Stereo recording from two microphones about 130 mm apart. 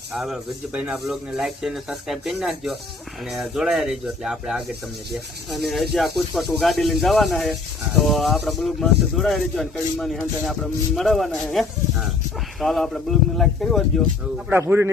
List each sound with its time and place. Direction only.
0.1 s speech: 5° right (ahead or behind)
14.5 s speech: 20° right (ahead or behind)